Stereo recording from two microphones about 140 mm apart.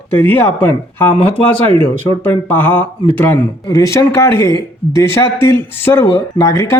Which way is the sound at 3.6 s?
25° left (ahead or behind).